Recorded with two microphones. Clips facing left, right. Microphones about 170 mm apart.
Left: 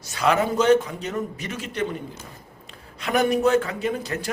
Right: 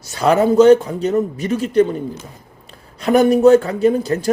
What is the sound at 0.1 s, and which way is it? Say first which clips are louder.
A man's voice: right 7 dB; 35° right (ahead or behind).